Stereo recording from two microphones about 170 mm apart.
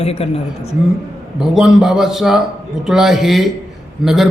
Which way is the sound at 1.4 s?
5° right (ahead or behind).